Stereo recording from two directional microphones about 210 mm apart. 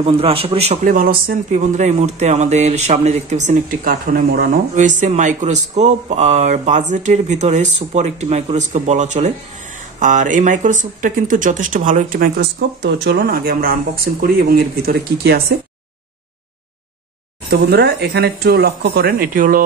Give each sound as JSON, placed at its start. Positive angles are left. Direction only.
{"t": 0.0, "sound": "speech", "side_deg": -25}
{"t": 4.7, "sound": "speech", "side_deg": -35}
{"t": 17.5, "sound": "speech", "side_deg": -50}